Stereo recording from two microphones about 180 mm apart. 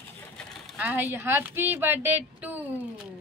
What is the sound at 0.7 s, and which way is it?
A woman's voice, 10° right (ahead or behind).